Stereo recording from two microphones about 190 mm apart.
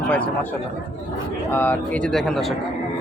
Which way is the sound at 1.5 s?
10° left (ahead or behind).